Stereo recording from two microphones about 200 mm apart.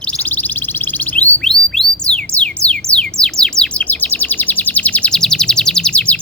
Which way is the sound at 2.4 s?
5° left (ahead or behind).